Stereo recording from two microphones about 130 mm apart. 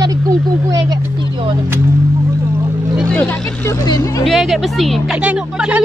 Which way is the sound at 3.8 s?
30° left (ahead or behind).